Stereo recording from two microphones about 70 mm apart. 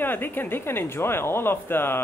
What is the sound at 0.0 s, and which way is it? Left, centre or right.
Speech, left.